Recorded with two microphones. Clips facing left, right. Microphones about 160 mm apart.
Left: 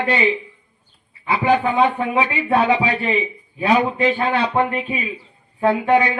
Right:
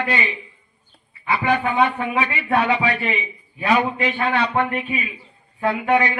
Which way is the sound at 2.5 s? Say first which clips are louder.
Left 2 dB; 30° left (ahead or behind).